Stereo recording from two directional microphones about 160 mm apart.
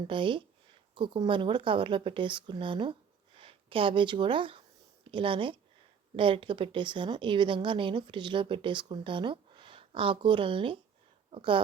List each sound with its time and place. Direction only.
0.1 s a woman's voice: 30° right (ahead or behind)